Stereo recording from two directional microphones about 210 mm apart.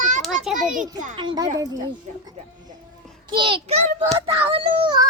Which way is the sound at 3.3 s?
25° right (ahead or behind).